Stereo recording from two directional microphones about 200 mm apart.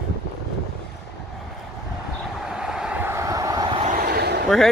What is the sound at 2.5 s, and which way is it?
Vehicle, 5° right (ahead or behind).